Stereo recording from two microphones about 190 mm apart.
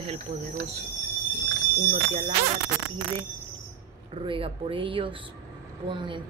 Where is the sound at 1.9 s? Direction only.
35° right (ahead or behind).